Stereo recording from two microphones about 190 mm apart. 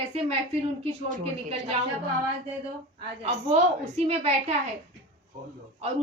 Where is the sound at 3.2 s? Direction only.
30° right (ahead or behind).